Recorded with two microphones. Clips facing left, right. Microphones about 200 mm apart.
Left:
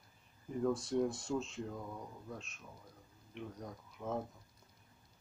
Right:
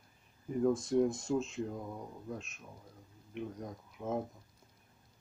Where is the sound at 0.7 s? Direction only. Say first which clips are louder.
Right 4 dB; 25° right (ahead or behind).